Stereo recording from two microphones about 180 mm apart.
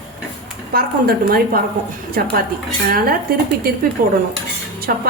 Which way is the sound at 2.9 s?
55° right (ahead or behind).